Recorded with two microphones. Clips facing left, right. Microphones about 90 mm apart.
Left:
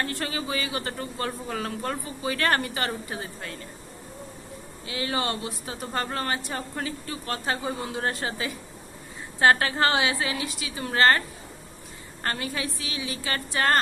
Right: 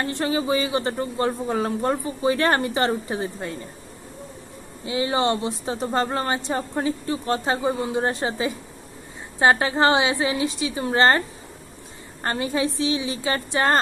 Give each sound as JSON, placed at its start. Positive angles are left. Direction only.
{"t": 0.0, "sound": "speech", "side_deg": -25}
{"t": 4.8, "sound": "speech", "side_deg": -25}